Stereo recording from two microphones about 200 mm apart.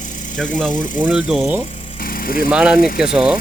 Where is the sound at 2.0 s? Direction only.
45° left (ahead or behind).